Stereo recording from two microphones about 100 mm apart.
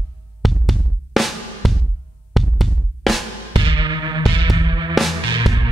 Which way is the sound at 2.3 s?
Centre (ahead or behind).